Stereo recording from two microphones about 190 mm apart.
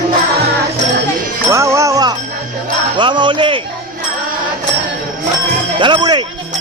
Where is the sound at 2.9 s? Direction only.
25° right (ahead or behind).